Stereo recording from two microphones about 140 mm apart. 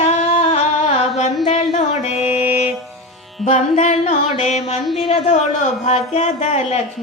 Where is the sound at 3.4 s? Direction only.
55° left (ahead or behind).